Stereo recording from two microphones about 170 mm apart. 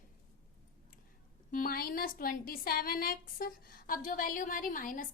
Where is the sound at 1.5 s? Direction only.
55° left (ahead or behind).